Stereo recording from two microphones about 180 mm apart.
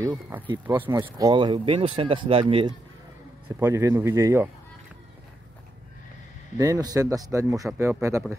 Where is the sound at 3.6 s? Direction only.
15° right (ahead or behind).